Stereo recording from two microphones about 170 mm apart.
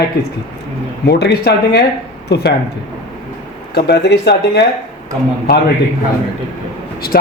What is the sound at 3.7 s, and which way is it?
Speech, 75° left (ahead or behind).